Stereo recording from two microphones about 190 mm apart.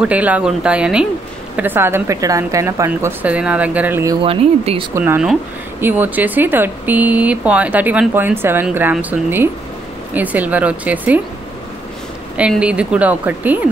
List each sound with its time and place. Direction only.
0.0 s speech: 5° right (ahead or behind)
4.2 s speech: 30° right (ahead or behind)
4.9 s speech: 10° right (ahead or behind)
12.4 s speech: 5° right (ahead or behind)